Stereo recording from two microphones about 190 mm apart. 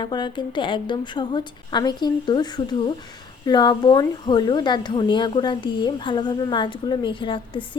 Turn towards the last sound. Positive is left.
turn(degrees=25)  # may be behind; listen again after turning